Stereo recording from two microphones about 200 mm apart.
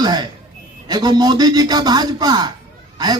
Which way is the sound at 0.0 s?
20° right (ahead or behind).